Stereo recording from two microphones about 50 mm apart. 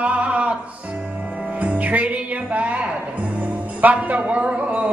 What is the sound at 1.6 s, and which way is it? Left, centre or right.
Music, right.